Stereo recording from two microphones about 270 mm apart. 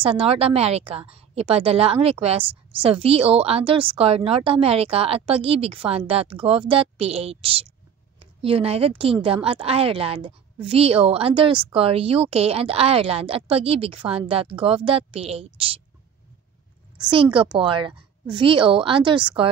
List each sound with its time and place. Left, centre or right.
0.0 s a woman's voice: right
17.1 s a woman's voice: centre